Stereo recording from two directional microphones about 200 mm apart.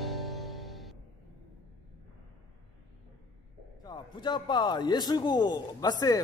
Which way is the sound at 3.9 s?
20° left (ahead or behind).